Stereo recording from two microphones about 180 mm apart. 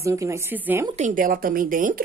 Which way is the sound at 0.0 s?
15° right (ahead or behind).